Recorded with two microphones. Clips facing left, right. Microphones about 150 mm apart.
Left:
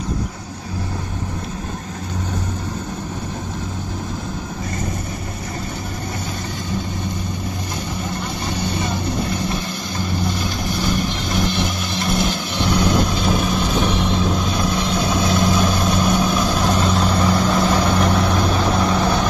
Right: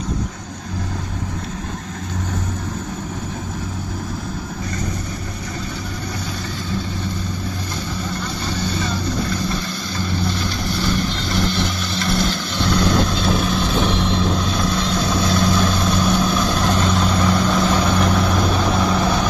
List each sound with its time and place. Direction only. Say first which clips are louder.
8.6 s vehicle: even; 20° left (ahead or behind); by 19.2 s centre (ahead or behind)